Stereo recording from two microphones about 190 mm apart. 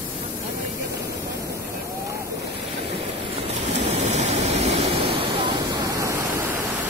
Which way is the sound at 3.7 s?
35° right (ahead or behind).